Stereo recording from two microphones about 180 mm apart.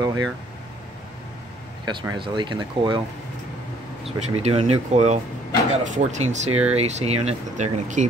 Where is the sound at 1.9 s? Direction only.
25° right (ahead or behind).